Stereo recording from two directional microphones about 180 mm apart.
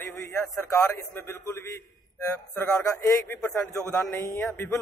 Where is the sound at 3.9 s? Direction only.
15° left (ahead or behind).